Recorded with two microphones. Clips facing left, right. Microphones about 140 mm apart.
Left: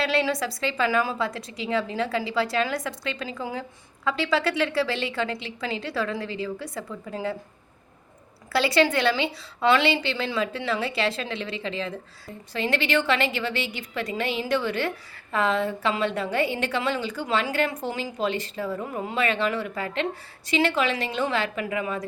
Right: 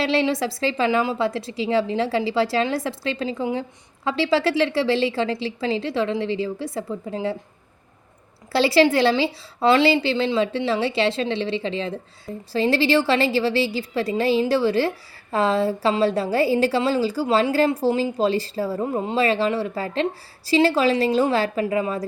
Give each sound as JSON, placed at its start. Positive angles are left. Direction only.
{"t": 0.0, "sound": "a woman's voice", "side_deg": -25}
{"t": 8.5, "sound": "a woman's voice", "side_deg": -30}